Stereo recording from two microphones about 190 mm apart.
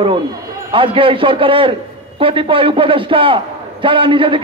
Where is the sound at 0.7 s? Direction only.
25° right (ahead or behind).